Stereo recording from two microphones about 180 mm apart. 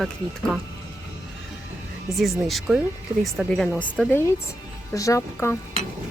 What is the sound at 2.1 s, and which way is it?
Speech, centre (ahead or behind).